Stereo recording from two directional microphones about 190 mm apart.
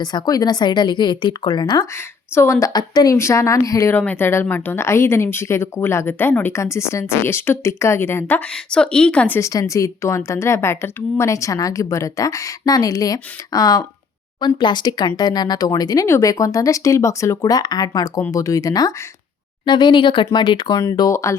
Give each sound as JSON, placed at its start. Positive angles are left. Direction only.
{"t": 0.0, "sound": "a woman's voice", "side_deg": 20}